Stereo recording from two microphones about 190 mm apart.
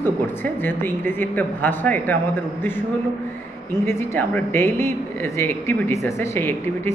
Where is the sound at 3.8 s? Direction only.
10° left (ahead or behind).